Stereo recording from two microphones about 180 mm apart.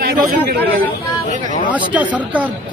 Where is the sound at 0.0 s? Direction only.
55° right (ahead or behind).